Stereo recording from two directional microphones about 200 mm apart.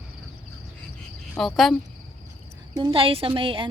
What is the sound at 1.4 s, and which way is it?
Speech, centre (ahead or behind).